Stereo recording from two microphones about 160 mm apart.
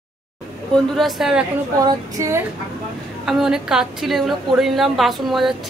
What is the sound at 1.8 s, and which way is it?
Female singing, 20° right (ahead or behind).